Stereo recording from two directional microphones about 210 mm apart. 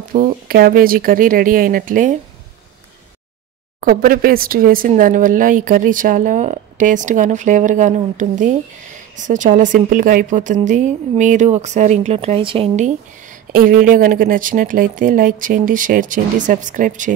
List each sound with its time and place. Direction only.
0.1 s speech: 40° right (ahead or behind)
3.8 s speech: 45° right (ahead or behind)